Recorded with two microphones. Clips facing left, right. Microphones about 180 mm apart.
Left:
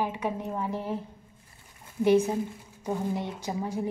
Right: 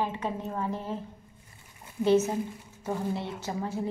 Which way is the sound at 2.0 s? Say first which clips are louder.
Left 1 dB; 15° left (ahead or behind).